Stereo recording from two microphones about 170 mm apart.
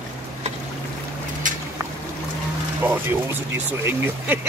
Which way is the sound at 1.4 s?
50° right (ahead or behind).